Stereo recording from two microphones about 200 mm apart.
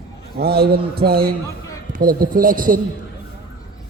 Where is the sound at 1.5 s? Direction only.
15° left (ahead or behind).